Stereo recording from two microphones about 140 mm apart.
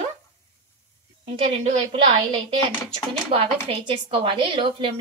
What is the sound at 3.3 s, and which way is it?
A woman's voice, 40° right (ahead or behind).